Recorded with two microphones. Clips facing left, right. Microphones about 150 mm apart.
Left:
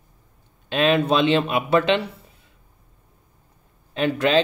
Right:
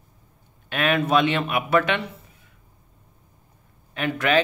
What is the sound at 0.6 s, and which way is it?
Speech, 25° left (ahead or behind).